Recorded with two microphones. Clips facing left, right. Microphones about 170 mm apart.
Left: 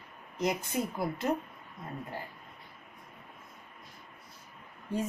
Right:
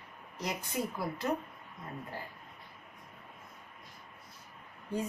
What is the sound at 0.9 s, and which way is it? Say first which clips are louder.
Speech: left 3 dB; 20° left (ahead or behind).